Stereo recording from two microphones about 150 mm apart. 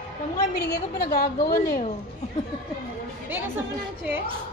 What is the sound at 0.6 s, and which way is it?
A woman's voice, 90° left.